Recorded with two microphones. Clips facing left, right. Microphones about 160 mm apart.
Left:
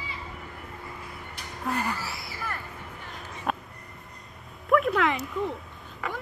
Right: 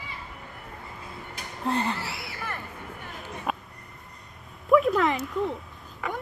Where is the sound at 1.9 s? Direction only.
65° right (ahead or behind).